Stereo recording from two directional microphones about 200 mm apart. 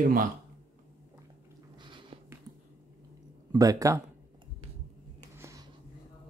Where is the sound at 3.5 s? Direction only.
15° right (ahead or behind).